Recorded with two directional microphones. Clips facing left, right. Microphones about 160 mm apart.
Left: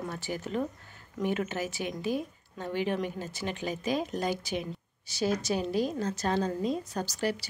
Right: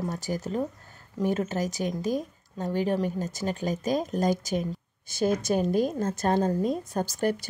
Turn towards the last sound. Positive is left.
turn(degrees=-50)  # may be behind; listen again after turning